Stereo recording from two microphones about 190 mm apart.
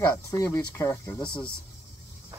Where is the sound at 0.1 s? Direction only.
15° left (ahead or behind).